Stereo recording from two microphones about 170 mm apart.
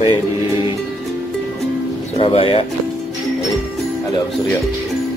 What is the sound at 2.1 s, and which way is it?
Speech, 30° left (ahead or behind).